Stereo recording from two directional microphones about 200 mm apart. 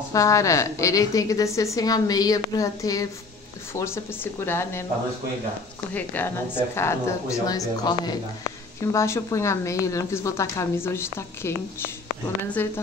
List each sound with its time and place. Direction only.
0.1 s a woman's voice: 15° left (ahead or behind)
5.9 s a woman's voice: 10° left (ahead or behind)